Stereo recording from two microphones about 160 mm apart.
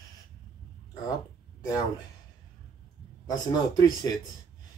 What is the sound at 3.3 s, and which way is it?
Speech, 25° left (ahead or behind).